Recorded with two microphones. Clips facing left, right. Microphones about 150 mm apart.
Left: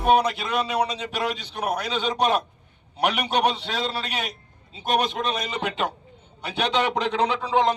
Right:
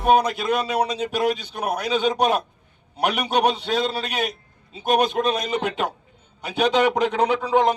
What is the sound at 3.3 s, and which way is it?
A man's voice, 45° right (ahead or behind).